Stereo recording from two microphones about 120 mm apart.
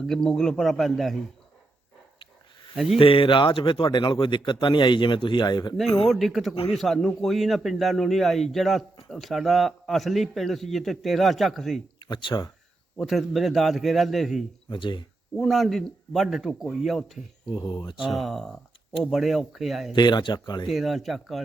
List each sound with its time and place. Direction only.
0.0 s a man's voice: 5° left (ahead or behind)
2.7 s a man's voice: 5° right (ahead or behind)
3.0 s speech: 45° left (ahead or behind)
6.1 s a man's voice: centre (ahead or behind)
6.5 s speech: 50° left (ahead or behind)
6.7 s a man's voice: centre (ahead or behind)
11.9 s speech: 40° left (ahead or behind)
13.0 s a man's voice: centre (ahead or behind)
14.7 s speech: 45° left (ahead or behind)
15.4 s a man's voice: centre (ahead or behind)
17.5 s speech: 35° left (ahead or behind)
17.9 s a man's voice: centre (ahead or behind)
19.9 s speech: 40° left (ahead or behind)
20.7 s a man's voice: centre (ahead or behind)